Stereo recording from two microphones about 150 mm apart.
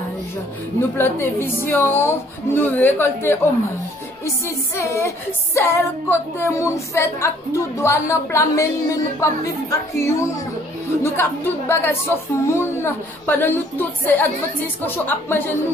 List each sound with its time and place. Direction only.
0.7 s speech: 15° left (ahead or behind)
4.2 s music: 20° left (ahead or behind)
11.0 s speech: 15° left (ahead or behind)